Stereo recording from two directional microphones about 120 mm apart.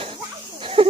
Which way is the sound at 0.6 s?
50° right (ahead or behind).